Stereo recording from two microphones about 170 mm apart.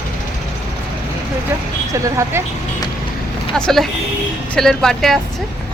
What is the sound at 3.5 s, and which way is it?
Speech, centre (ahead or behind).